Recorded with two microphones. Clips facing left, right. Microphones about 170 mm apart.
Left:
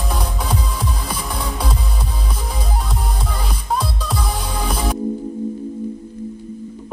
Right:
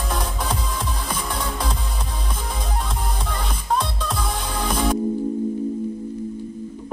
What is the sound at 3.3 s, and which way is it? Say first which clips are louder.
Music: even; centre (ahead or behind).